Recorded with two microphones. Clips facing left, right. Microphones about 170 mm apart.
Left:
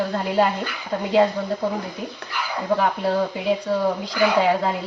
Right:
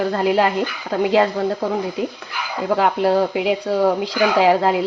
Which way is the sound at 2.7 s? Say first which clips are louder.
Right 4 dB; 90° right.